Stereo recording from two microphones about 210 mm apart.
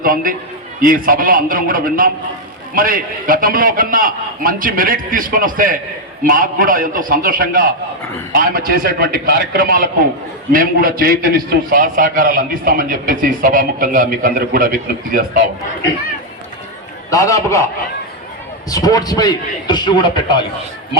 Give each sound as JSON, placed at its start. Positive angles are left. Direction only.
{"t": 0.0, "sound": "a man's voice", "side_deg": -40}
{"t": 17.1, "sound": "a man's voice", "side_deg": 15}
{"t": 18.7, "sound": "a man's voice", "side_deg": 20}